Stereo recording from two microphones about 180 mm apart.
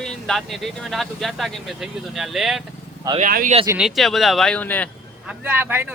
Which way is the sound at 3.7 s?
Centre (ahead or behind).